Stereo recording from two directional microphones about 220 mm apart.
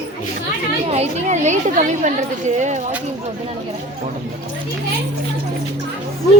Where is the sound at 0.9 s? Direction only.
30° right (ahead or behind).